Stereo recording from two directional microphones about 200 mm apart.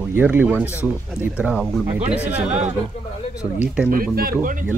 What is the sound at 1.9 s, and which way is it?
Speech, 35° right (ahead or behind).